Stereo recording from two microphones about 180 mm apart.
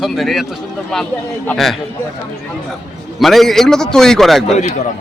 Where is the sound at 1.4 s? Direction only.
Centre (ahead or behind).